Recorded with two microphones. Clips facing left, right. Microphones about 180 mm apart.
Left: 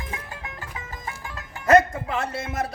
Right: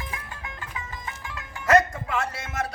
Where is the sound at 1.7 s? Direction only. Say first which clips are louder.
Left 3 dB; 30° left (ahead or behind).